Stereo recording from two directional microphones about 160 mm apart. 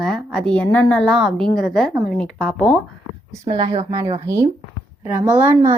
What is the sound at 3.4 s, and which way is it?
Speech, 35° right (ahead or behind).